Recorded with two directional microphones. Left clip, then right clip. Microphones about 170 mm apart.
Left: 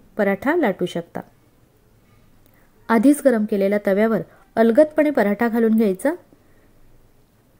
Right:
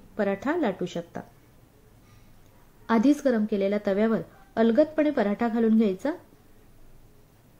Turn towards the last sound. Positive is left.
turn(degrees=35)  # may be behind; listen again after turning